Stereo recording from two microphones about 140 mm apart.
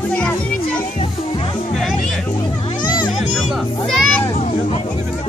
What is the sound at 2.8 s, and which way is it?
Music, 30° left (ahead or behind).